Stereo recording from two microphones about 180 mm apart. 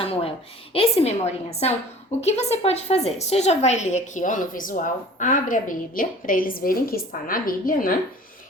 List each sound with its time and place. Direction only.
0.0 s a woman's voice: 30° left (ahead or behind); by 7.9 s 50° left (ahead or behind)